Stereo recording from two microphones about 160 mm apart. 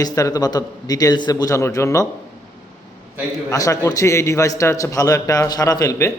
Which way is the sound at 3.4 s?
20° left (ahead or behind).